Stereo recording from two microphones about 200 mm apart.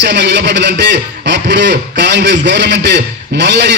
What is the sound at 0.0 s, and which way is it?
A man's voice, 60° right (ahead or behind).